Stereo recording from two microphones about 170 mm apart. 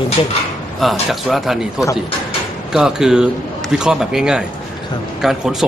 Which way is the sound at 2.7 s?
5° right (ahead or behind).